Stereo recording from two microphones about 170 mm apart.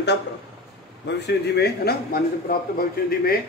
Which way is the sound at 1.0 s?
75° left (ahead or behind).